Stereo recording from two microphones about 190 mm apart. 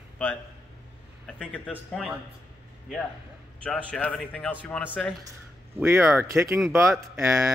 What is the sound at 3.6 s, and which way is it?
Speech, 5° left (ahead or behind).